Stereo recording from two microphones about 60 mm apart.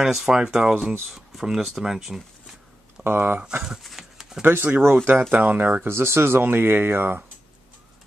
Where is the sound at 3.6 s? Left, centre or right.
Centre.